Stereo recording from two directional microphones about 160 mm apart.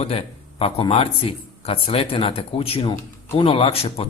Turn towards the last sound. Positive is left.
turn(degrees=35)  # may be behind; listen again after turning